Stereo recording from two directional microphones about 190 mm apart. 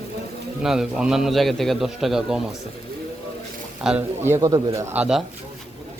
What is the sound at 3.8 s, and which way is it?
A man's voice, 5° right (ahead or behind).